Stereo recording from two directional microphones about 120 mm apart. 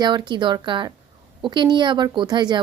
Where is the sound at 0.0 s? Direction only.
40° right (ahead or behind).